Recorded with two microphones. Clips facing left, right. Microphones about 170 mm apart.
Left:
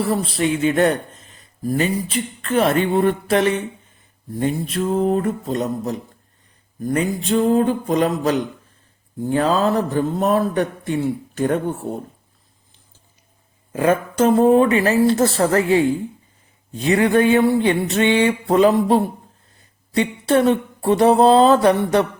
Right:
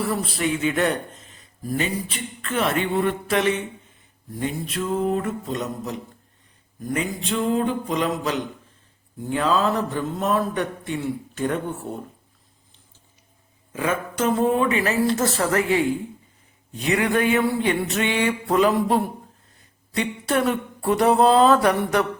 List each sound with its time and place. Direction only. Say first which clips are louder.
0.0 s speech: left 4 dB; 30° left (ahead or behind)
13.7 s speech: left 7 dB; 40° left (ahead or behind)
18.4 s a sound: left 4 dB; 30° left (ahead or behind)